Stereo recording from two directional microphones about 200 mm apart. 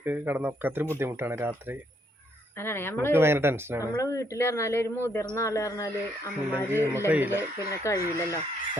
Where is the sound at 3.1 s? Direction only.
10° right (ahead or behind).